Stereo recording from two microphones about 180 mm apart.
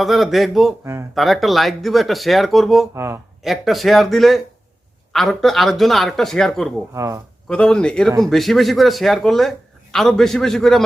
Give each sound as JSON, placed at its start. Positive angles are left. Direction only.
{"t": 0.0, "sound": "speech", "side_deg": 0}
{"t": 2.9, "sound": "speech", "side_deg": -15}
{"t": 3.4, "sound": "speech", "side_deg": 0}
{"t": 6.9, "sound": "speech", "side_deg": -15}
{"t": 7.4, "sound": "speech", "side_deg": 5}